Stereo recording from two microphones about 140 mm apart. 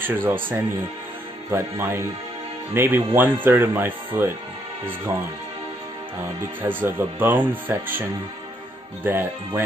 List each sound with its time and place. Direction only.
0.0 s speech: 15° right (ahead or behind)
6.6 s speech: 15° right (ahead or behind)
9.0 s speech: 15° right (ahead or behind)